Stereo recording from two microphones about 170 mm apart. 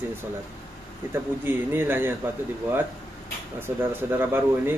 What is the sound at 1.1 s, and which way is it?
Speech, 15° right (ahead or behind).